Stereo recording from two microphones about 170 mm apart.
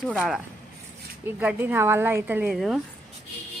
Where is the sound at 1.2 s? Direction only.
10° right (ahead or behind).